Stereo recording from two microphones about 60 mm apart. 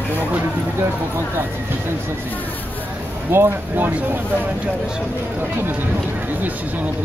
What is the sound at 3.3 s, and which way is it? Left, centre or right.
Speech, right.